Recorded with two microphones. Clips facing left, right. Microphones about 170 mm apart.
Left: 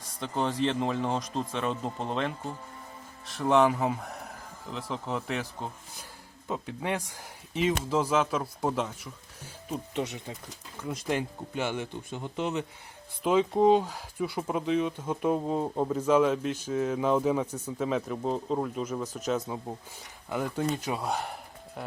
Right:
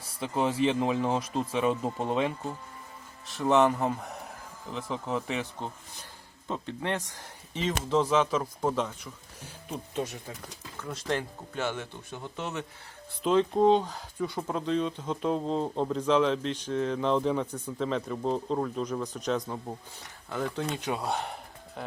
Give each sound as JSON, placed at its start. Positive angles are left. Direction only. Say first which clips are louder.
{"t": 0.2, "sound": "a man's voice", "louder": "right 2 dB", "side_deg": -5}
{"t": 10.1, "sound": "a man's voice", "louder": "left 1 dB", "side_deg": 20}